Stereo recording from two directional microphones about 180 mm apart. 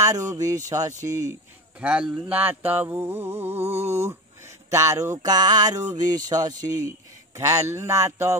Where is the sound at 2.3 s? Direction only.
10° right (ahead or behind).